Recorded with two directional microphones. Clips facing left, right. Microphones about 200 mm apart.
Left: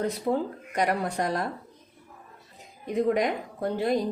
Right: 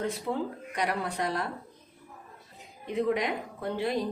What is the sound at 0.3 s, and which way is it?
A woman's voice, 40° left (ahead or behind).